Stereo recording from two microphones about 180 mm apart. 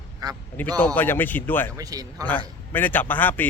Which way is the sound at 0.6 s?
10° left (ahead or behind).